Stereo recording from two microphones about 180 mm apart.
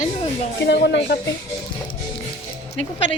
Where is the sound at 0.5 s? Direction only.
70° left (ahead or behind).